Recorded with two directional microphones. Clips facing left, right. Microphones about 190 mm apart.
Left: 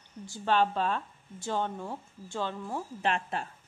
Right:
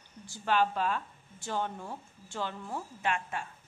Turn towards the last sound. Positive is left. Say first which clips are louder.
# left 3 dB
turn(degrees=35)  # may be behind; listen again after turning